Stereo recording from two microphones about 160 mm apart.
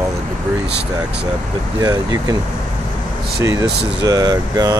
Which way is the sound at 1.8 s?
25° right (ahead or behind).